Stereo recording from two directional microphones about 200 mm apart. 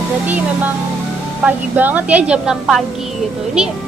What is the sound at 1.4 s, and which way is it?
A woman's voice, 10° right (ahead or behind).